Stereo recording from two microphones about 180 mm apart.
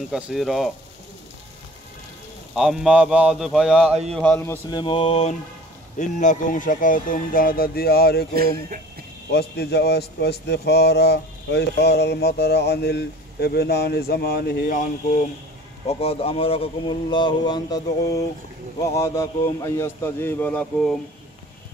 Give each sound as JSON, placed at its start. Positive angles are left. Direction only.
{"t": 0.1, "sound": "speech", "side_deg": 0}
{"t": 2.5, "sound": "speech", "side_deg": 0}
{"t": 4.5, "sound": "speech", "side_deg": 25}
{"t": 5.9, "sound": "speech", "side_deg": 45}
{"t": 9.3, "sound": "speech", "side_deg": 65}
{"t": 15.9, "sound": "a man's voice", "side_deg": 35}